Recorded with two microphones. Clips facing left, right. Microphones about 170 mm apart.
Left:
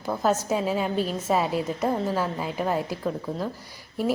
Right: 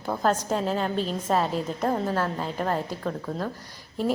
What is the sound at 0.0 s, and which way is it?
A woman's voice, 5° left (ahead or behind).